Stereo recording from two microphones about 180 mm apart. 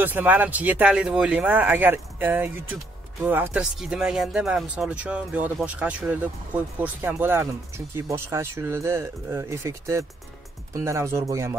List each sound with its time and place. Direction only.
0.0 s speech: 10° right (ahead or behind)